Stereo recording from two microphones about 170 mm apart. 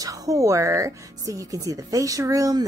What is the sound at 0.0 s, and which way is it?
Speech, 20° right (ahead or behind).